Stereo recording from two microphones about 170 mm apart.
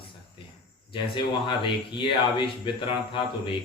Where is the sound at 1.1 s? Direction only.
30° left (ahead or behind).